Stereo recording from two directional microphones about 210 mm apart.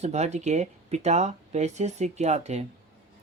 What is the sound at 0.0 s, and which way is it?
Speech, 30° right (ahead or behind).